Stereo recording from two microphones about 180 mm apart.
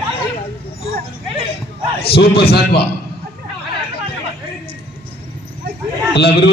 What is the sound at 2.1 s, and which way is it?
Speech, 60° left (ahead or behind).